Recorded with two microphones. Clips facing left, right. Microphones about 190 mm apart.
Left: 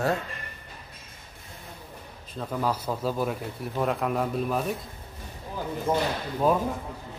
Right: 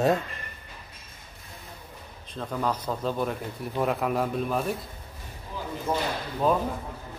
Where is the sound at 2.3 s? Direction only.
5° left (ahead or behind).